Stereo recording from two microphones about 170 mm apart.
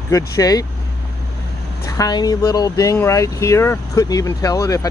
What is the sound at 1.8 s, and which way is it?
Speech, 20° left (ahead or behind).